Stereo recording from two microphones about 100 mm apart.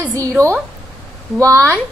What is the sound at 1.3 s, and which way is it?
Speech, 30° right (ahead or behind).